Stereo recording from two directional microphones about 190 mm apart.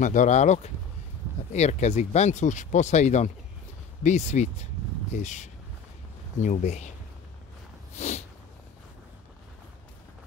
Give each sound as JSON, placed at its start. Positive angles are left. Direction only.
{"t": 0.0, "sound": "speech", "side_deg": 40}
{"t": 7.9, "sound": "snort", "side_deg": 35}